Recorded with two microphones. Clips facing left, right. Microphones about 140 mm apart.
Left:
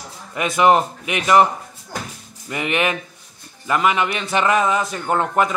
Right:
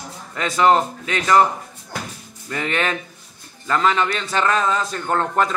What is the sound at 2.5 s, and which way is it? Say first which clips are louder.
Speech: left 2 dB; 15° left (ahead or behind).